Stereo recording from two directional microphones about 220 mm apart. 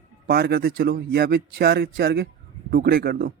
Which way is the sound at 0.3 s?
45° right (ahead or behind).